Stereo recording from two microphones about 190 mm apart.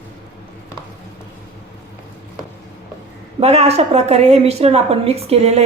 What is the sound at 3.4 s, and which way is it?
A woman's voice, 35° right (ahead or behind).